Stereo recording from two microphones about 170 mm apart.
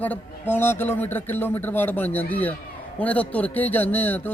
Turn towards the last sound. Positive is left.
turn(degrees=10)  # may be behind; listen again after turning